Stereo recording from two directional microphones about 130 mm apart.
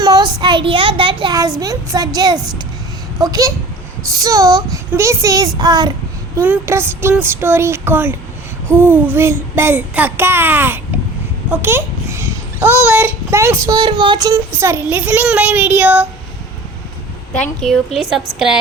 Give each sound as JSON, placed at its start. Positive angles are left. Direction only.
{"t": 0.0, "sound": "a child's voice", "side_deg": -35}
{"t": 1.4, "sound": "a sound", "side_deg": -30}
{"t": 5.5, "sound": "child singing", "side_deg": -30}
{"t": 6.4, "sound": "a sound", "side_deg": -15}
{"t": 8.6, "sound": "speech", "side_deg": -20}
{"t": 11.5, "sound": "a sound", "side_deg": -20}
{"t": 12.8, "sound": "speech", "side_deg": -15}
{"t": 13.7, "sound": "speech", "side_deg": -35}
{"t": 17.3, "sound": "a woman's voice", "side_deg": 5}